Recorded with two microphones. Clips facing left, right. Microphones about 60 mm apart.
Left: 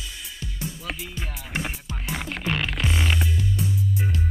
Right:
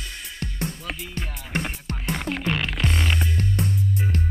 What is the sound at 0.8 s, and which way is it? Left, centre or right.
Music, centre.